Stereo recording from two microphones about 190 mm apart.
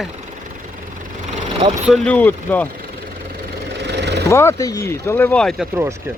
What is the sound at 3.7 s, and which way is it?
Vehicle, 65° right (ahead or behind).